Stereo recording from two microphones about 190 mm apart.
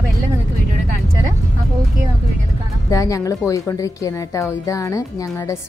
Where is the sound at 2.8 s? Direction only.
15° left (ahead or behind).